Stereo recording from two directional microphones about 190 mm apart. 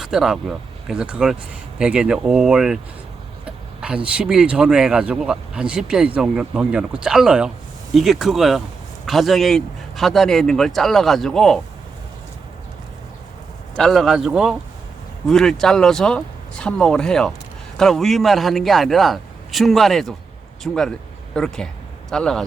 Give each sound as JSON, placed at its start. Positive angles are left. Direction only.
{"t": 0.0, "sound": "speech", "side_deg": 0}
{"t": 13.7, "sound": "speech", "side_deg": 0}